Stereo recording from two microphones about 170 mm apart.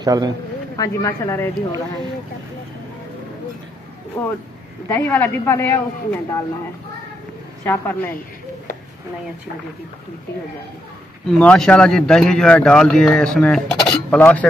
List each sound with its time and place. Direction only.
0.0 s speech: 25° right (ahead or behind)
0.7 s a man's voice: 20° left (ahead or behind)
4.2 s a man's voice: 10° left (ahead or behind)
7.6 s a man's voice: 15° left (ahead or behind)
11.2 s speech: 5° left (ahead or behind)